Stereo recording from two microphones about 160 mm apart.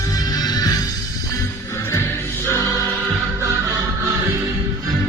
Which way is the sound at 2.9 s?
10° right (ahead or behind).